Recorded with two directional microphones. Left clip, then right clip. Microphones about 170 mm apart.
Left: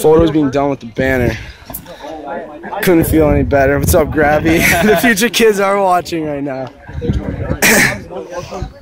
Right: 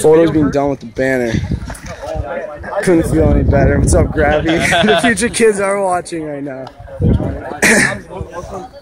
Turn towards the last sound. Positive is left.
turn(degrees=15)  # may be behind; listen again after turning